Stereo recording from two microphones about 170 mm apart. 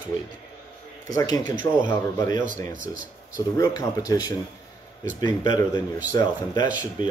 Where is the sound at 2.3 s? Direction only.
50° right (ahead or behind).